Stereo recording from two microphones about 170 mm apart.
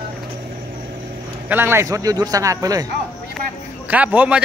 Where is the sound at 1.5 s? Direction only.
15° right (ahead or behind).